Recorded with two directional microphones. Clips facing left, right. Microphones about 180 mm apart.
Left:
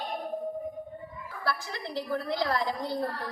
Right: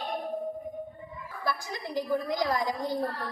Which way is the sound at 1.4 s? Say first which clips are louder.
Even; 15° right (ahead or behind).